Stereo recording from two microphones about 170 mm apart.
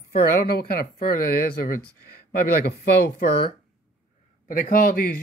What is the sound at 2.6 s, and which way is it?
Speech, 65° left (ahead or behind).